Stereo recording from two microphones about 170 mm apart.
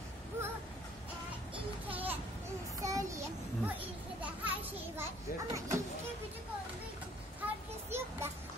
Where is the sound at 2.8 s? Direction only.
20° right (ahead or behind).